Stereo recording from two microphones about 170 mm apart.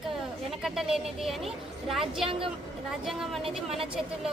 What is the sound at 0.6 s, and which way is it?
A woman's voice, centre (ahead or behind).